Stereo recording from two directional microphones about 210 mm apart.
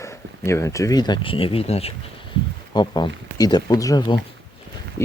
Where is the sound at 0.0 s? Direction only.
15° left (ahead or behind).